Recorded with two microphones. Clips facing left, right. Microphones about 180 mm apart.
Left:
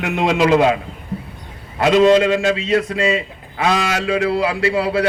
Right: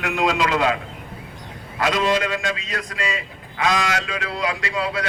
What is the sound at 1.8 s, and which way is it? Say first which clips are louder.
A man's voice: left 9 dB; 30° left (ahead or behind).